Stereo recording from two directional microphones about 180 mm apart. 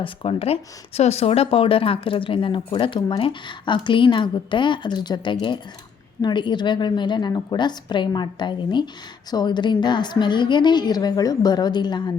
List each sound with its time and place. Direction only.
0.0 s speech: 30° left (ahead or behind)